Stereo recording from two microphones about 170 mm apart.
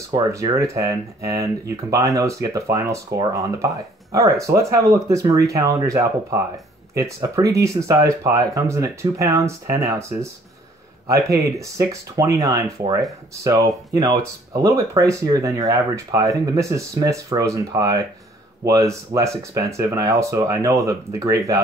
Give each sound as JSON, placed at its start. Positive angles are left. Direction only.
{"t": 0.1, "sound": "speech", "side_deg": -20}
{"t": 11.2, "sound": "speech", "side_deg": -20}